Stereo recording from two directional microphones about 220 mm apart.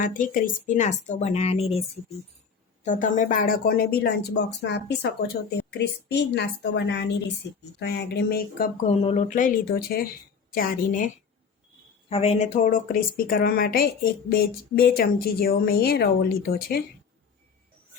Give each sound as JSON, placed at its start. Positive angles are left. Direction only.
{"t": 0.0, "sound": "speech", "side_deg": 35}
{"t": 12.0, "sound": "speech", "side_deg": 25}